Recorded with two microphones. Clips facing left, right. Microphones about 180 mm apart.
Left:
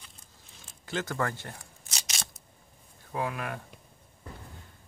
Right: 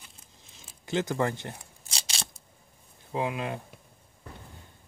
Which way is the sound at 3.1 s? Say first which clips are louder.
Right 3 dB; 20° right (ahead or behind).